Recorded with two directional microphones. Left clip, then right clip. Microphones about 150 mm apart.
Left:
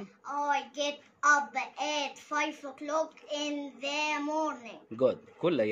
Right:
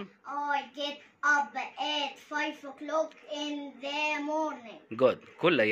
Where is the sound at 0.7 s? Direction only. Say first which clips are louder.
Left 3 dB; 15° left (ahead or behind).